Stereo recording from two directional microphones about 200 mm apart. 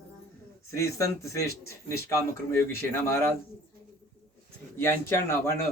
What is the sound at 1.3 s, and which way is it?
Speech, 15° left (ahead or behind).